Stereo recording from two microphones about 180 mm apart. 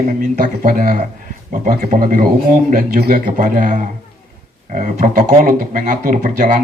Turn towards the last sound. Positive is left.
turn(degrees=-45)  # may be behind; listen again after turning